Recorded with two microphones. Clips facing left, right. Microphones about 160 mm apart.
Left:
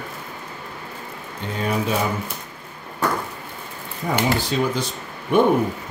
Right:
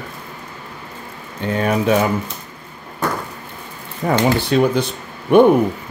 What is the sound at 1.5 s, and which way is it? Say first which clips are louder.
Speech: right 6 dB; 65° right (ahead or behind).